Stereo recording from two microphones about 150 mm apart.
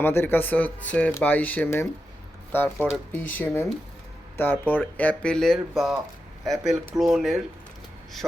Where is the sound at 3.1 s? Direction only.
10° left (ahead or behind).